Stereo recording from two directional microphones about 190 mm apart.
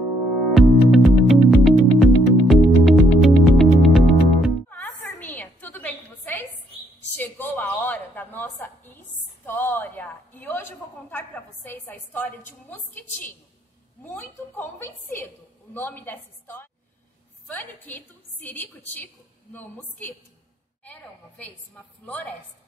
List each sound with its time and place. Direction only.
0.6 s music: centre (ahead or behind)
4.6 s a sound: 10° left (ahead or behind)
14.0 s a woman's voice: 10° left (ahead or behind)